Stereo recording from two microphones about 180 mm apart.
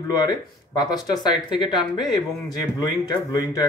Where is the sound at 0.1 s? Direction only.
20° left (ahead or behind).